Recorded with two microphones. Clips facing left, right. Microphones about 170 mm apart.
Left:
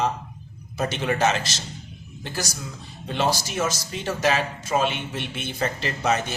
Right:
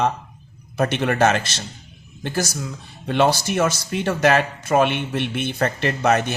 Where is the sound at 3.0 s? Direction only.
60° right (ahead or behind).